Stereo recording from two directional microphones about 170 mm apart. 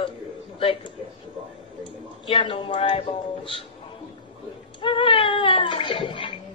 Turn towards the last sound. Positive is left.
turn(degrees=30)  # may be behind; listen again after turning